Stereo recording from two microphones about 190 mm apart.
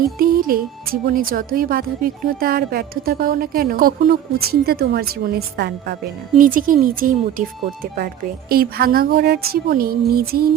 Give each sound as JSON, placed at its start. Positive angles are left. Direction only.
{"t": 0.2, "sound": "a woman's voice", "side_deg": -50}